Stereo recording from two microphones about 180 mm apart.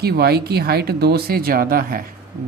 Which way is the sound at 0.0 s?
60° right (ahead or behind).